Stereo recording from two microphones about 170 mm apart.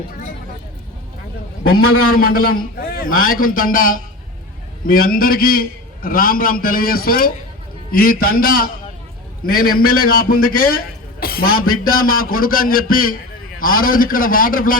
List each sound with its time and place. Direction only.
1.7 s a man's voice: 60° left (ahead or behind)